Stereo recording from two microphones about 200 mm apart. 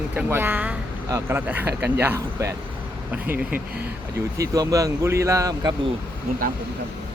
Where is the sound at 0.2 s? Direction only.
10° right (ahead or behind).